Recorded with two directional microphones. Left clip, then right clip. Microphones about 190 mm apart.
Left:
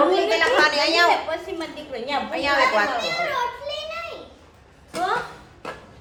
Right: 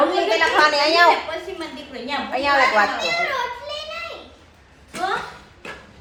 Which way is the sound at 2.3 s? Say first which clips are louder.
Right 3 dB; 10° right (ahead or behind).